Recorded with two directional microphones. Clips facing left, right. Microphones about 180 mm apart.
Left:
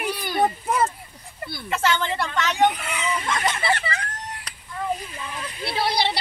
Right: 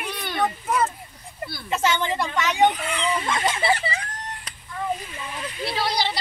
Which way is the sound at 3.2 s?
15° right (ahead or behind).